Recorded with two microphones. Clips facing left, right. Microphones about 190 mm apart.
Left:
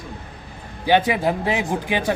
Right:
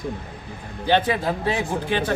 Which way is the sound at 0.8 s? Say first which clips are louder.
Left 2 dB; 15° left (ahead or behind).